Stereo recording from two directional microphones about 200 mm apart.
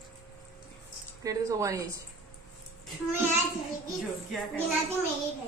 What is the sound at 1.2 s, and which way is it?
Speech, 15° right (ahead or behind).